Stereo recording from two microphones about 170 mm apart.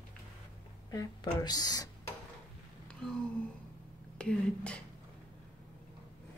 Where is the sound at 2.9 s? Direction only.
5° left (ahead or behind).